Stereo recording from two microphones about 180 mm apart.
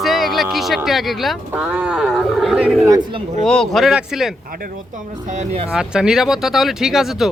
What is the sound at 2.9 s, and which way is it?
Speech, 25° right (ahead or behind).